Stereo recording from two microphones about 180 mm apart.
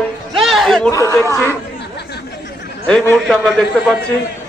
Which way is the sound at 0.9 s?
15° left (ahead or behind).